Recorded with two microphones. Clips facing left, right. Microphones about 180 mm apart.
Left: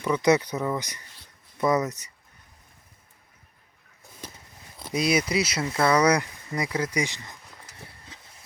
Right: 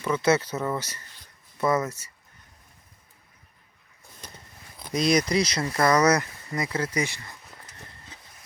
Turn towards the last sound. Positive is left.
turn(degrees=15)  # may be behind; listen again after turning